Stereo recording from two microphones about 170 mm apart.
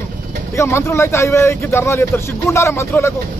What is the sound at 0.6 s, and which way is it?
A man's voice, 15° left (ahead or behind).